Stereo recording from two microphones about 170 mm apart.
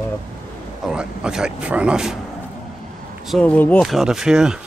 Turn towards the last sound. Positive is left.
turn(degrees=-5)  # may be behind; listen again after turning